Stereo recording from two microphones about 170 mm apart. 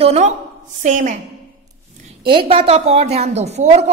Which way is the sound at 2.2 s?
30° right (ahead or behind).